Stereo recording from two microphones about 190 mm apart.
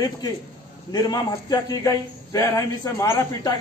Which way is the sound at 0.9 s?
20° left (ahead or behind).